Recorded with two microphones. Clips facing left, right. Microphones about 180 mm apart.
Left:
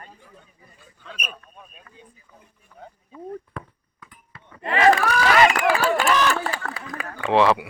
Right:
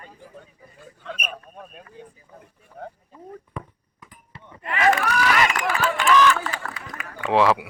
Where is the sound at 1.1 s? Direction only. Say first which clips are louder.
Right 4 dB; 55° right (ahead or behind).